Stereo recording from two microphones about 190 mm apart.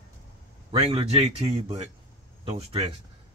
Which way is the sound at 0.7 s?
30° right (ahead or behind).